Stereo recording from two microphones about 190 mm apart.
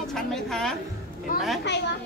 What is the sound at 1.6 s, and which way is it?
Speech, 65° left (ahead or behind).